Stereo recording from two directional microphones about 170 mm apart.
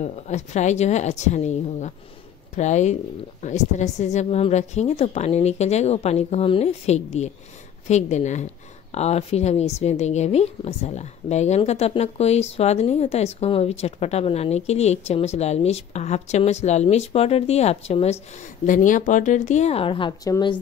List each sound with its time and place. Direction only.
0.0 s a woman's voice: 45° left (ahead or behind)
18.7 s a woman's voice: 50° left (ahead or behind); by 20.5 s 25° left (ahead or behind)